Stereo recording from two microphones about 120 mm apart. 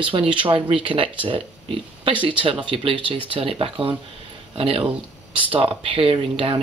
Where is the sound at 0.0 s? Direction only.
45° right (ahead or behind).